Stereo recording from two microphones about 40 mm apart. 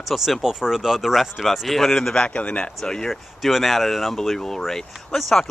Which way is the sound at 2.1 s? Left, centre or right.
Left.